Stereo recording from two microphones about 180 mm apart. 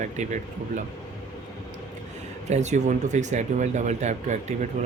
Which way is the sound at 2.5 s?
40° right (ahead or behind).